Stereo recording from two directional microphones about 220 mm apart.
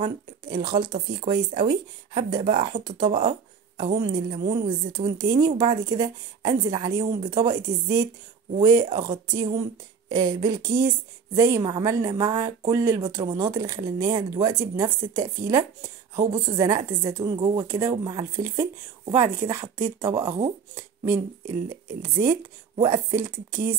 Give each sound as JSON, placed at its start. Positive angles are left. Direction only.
{"t": 0.0, "sound": "speech", "side_deg": -20}